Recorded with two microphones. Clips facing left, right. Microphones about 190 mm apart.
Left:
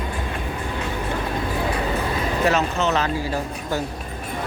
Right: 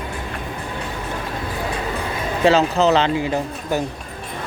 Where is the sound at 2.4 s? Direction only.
35° right (ahead or behind).